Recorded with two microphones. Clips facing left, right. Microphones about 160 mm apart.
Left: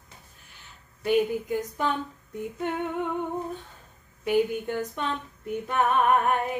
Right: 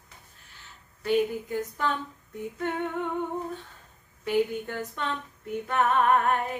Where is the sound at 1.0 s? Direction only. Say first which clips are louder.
Left 2 dB; 15° left (ahead or behind).